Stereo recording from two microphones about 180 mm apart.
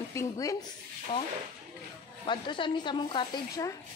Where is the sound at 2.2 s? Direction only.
25° left (ahead or behind).